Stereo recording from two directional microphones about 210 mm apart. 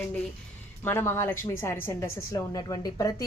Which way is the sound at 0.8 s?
10° left (ahead or behind).